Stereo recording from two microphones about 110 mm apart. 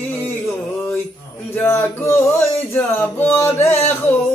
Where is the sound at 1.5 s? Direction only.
20° left (ahead or behind).